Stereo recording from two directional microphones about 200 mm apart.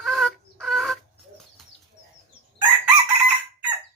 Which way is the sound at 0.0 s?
Centre (ahead or behind).